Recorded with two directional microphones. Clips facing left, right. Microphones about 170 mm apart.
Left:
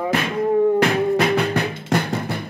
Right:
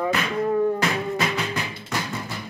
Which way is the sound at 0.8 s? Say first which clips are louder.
Left 7 dB; 60° left (ahead or behind).